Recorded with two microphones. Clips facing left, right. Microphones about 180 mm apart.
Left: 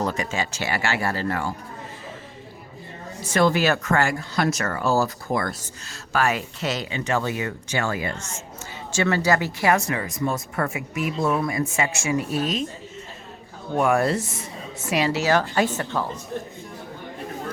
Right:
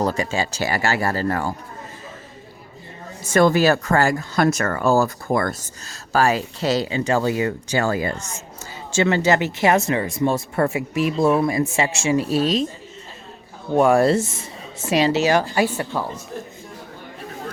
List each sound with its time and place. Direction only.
0.0 s speech: 30° right (ahead or behind)
3.2 s speech: 50° right (ahead or behind)
4.4 s speech: 50° right (ahead or behind)
6.1 s speech: 35° right (ahead or behind)
8.9 s speech: 25° right (ahead or behind)
13.7 s speech: 30° right (ahead or behind); by 16.0 s 10° right (ahead or behind)